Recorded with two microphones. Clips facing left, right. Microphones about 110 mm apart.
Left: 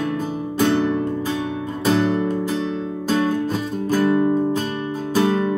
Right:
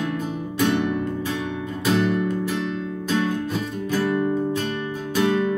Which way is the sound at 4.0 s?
30° left (ahead or behind).